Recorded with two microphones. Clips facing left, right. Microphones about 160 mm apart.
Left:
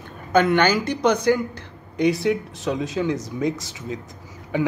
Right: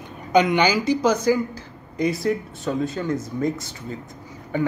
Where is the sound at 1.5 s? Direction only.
70° left (ahead or behind).